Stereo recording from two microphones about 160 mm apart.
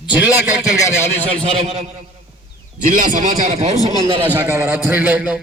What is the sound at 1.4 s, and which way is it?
Speech, 40° right (ahead or behind).